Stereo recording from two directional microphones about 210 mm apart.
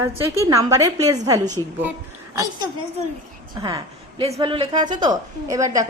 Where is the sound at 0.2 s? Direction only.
15° right (ahead or behind).